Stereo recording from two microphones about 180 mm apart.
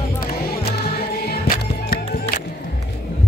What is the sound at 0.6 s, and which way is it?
Music, 60° left (ahead or behind).